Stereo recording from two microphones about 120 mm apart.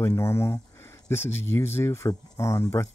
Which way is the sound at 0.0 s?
25° left (ahead or behind).